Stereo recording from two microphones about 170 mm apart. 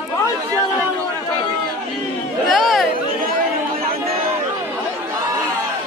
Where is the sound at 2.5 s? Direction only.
Centre (ahead or behind).